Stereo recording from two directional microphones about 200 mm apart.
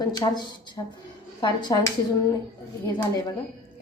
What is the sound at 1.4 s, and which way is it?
Speech, 20° left (ahead or behind).